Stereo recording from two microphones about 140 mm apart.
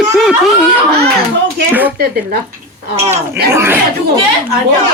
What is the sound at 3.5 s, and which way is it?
Speech, 15° right (ahead or behind).